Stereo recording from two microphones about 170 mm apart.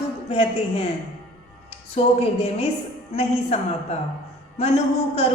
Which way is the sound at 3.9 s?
40° left (ahead or behind).